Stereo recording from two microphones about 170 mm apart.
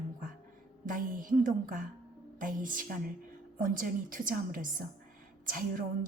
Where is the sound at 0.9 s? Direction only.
55° right (ahead or behind).